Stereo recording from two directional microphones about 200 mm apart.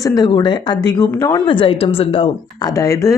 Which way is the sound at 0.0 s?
20° left (ahead or behind).